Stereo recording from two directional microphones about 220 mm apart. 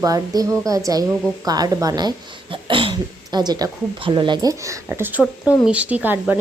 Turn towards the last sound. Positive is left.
turn(degrees=-10)  # may be behind; listen again after turning